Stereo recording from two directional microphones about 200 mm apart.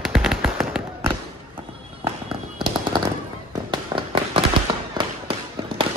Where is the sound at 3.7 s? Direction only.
25° right (ahead or behind).